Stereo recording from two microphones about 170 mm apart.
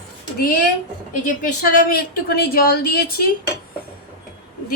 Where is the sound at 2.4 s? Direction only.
60° left (ahead or behind).